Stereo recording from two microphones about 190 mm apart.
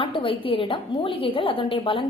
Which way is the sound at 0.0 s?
30° left (ahead or behind).